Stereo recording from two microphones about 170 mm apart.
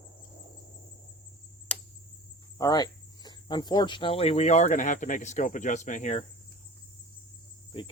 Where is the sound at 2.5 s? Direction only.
25° left (ahead or behind); by 6.2 s 45° left (ahead or behind).